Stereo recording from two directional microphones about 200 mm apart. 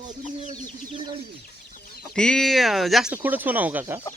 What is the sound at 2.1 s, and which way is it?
Speech, 5° left (ahead or behind).